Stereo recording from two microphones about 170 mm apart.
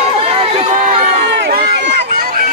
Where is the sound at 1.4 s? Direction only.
75° right (ahead or behind).